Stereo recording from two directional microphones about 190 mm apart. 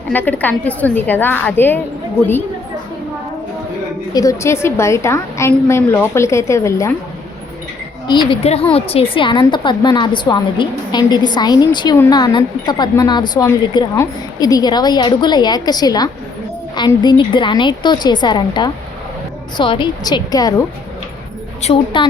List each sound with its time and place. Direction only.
0.1 s a woman's voice: 10° left (ahead or behind)
4.1 s a woman's voice: 15° left (ahead or behind)
8.0 s a woman's voice: 25° left (ahead or behind)
21.6 s a woman's voice: 30° left (ahead or behind)